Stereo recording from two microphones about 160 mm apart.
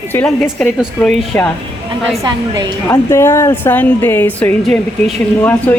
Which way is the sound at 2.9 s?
20° left (ahead or behind).